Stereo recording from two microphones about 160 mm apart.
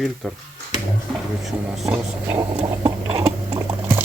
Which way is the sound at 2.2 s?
20° right (ahead or behind).